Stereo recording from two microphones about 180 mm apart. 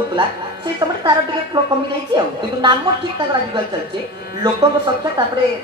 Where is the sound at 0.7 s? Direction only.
20° right (ahead or behind).